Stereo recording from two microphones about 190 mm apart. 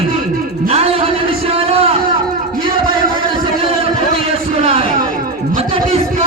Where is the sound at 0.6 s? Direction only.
30° right (ahead or behind).